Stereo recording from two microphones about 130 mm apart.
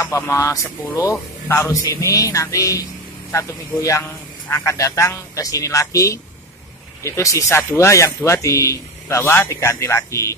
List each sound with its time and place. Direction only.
0.0 s speech: 20° left (ahead or behind)